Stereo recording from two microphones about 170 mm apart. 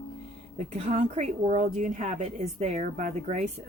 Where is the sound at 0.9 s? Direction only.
45° right (ahead or behind).